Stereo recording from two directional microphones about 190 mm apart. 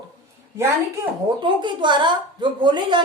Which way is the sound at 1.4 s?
25° right (ahead or behind).